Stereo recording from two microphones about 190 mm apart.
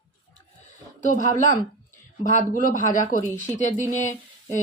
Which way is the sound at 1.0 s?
45° left (ahead or behind).